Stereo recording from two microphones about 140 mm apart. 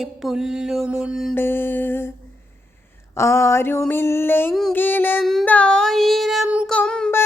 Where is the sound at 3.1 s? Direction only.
20° left (ahead or behind).